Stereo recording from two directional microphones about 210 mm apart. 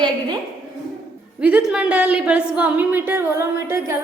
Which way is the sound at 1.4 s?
5° right (ahead or behind).